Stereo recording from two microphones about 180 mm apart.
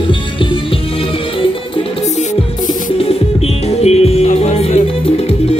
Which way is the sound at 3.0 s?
35° left (ahead or behind).